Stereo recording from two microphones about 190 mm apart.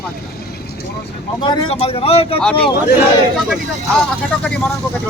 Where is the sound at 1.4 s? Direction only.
30° left (ahead or behind).